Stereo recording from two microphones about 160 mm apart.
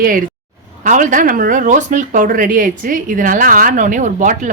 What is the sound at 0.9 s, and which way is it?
Speech, 55° right (ahead or behind).